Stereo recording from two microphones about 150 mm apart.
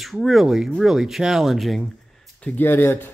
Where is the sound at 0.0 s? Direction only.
Centre (ahead or behind).